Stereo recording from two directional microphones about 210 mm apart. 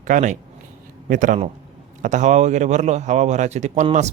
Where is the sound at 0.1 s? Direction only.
35° right (ahead or behind).